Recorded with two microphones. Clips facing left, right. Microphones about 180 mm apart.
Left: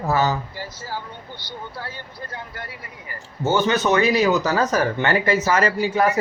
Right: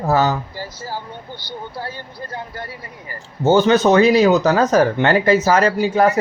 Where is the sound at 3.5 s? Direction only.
35° right (ahead or behind).